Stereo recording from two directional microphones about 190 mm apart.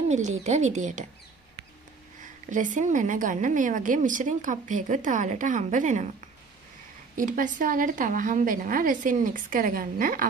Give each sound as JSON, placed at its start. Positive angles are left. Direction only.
{"t": 0.4, "sound": "a woman's voice", "side_deg": -35}
{"t": 2.2, "sound": "a woman's voice", "side_deg": -40}
{"t": 7.2, "sound": "speech", "side_deg": -45}